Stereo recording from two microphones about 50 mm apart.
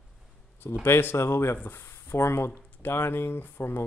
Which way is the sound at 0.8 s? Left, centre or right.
Left.